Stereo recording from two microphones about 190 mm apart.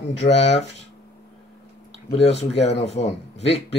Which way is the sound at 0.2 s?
35° left (ahead or behind).